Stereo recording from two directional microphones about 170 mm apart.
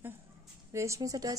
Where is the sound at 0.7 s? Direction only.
15° right (ahead or behind).